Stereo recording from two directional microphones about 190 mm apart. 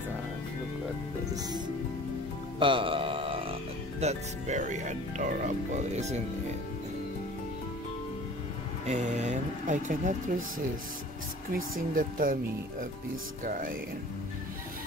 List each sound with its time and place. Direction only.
2.6 s music: 25° right (ahead or behind)
4.0 s speech: 35° right (ahead or behind)
8.8 s speech: 40° right (ahead or behind)
11.5 s speech: 45° right (ahead or behind)
13.4 s speech: 45° right (ahead or behind)